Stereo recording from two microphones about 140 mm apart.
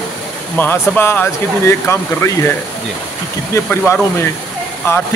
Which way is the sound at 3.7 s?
10° left (ahead or behind).